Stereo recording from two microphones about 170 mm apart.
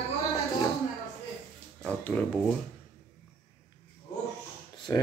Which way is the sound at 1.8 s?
10° left (ahead or behind).